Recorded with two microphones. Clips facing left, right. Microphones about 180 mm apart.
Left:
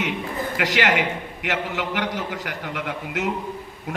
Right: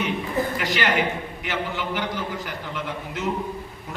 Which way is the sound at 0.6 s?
90° left.